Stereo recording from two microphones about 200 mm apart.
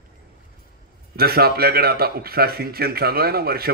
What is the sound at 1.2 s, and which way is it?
Speech, 50° right (ahead or behind).